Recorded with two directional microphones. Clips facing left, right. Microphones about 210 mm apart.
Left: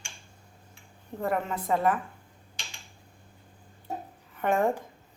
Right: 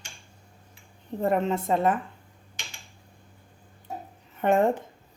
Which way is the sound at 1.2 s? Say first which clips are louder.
Right 5 dB; 25° right (ahead or behind).